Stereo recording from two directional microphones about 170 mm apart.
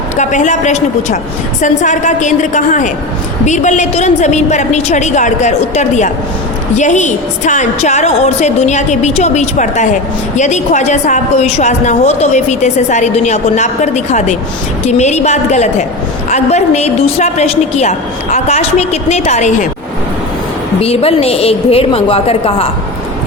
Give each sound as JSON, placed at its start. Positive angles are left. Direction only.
{"t": 0.2, "sound": "a woman's voice", "side_deg": 45}
{"t": 20.8, "sound": "a woman's voice", "side_deg": 35}